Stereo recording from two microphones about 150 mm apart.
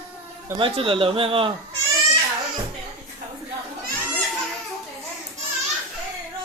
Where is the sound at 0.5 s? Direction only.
35° right (ahead or behind).